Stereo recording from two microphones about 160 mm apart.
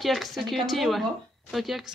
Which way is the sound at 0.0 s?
Centre (ahead or behind).